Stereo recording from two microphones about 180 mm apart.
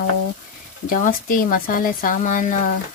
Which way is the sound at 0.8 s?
50° left (ahead or behind).